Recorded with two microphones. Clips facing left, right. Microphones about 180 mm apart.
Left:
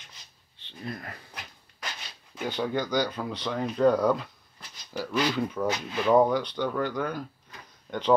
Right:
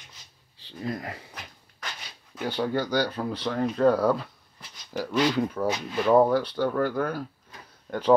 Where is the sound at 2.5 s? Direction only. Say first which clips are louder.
Right 2 dB; 10° right (ahead or behind).